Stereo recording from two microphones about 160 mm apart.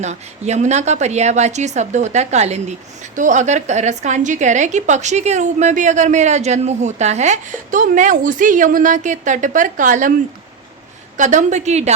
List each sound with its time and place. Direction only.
0.0 s a woman's voice: 45° right (ahead or behind)
11.2 s a woman's voice: 50° right (ahead or behind)